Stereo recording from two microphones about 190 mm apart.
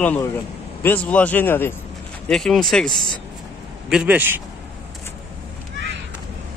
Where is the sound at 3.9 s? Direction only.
5° right (ahead or behind).